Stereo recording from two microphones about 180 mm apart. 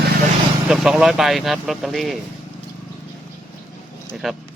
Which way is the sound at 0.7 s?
5° right (ahead or behind).